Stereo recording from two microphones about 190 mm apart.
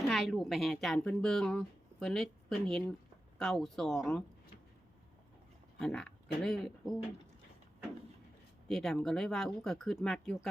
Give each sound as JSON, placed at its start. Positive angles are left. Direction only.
{"t": 0.1, "sound": "speech", "side_deg": 0}
{"t": 5.8, "sound": "speech", "side_deg": 5}
{"t": 8.6, "sound": "speech", "side_deg": 0}